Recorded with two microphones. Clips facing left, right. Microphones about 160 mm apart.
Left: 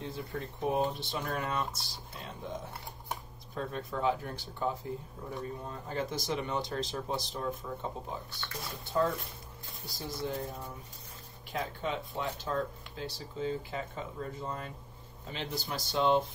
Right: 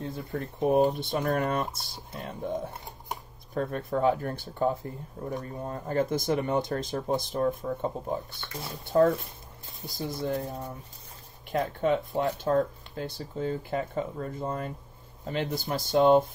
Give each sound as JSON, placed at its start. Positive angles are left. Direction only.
{"t": 0.1, "sound": "speech", "side_deg": -55}
{"t": 9.8, "sound": "speech", "side_deg": -20}
{"t": 10.0, "sound": "speech", "side_deg": -55}